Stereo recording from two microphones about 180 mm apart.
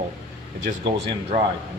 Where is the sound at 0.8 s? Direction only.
30° right (ahead or behind).